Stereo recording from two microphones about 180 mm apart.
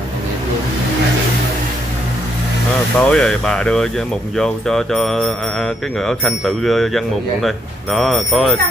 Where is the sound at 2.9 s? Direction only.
5° left (ahead or behind).